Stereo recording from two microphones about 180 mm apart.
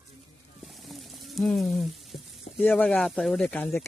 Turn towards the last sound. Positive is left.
turn(degrees=5)  # may be behind; listen again after turning